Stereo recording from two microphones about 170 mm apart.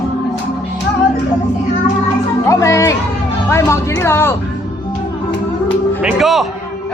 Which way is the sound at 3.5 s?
15° left (ahead or behind).